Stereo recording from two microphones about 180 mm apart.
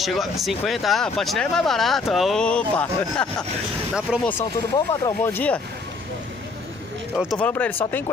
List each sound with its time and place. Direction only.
0.0 s speech: centre (ahead or behind)
4.1 s speech: 5° right (ahead or behind)
4.7 s speech: 15° left (ahead or behind)
7.3 s speech: 10° left (ahead or behind)